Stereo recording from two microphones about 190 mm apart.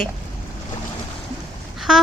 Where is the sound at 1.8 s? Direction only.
Centre (ahead or behind).